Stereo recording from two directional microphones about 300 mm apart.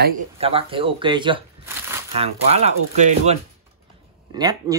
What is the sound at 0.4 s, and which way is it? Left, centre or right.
Speech, centre.